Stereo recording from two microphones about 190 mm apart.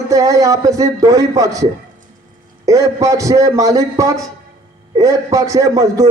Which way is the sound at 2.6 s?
15° right (ahead or behind).